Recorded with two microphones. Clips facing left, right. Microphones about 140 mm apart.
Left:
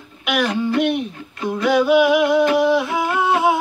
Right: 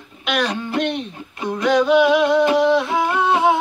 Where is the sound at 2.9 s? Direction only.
5° left (ahead or behind).